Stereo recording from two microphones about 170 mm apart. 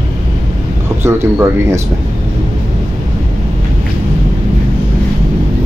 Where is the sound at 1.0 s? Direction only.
15° right (ahead or behind).